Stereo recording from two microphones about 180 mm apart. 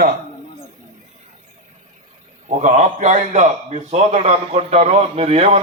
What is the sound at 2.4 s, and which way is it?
A man's voice, 40° right (ahead or behind).